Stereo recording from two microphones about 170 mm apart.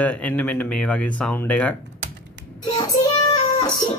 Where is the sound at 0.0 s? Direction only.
10° left (ahead or behind).